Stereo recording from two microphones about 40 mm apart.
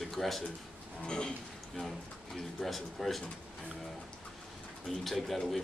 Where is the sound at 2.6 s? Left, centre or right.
Centre.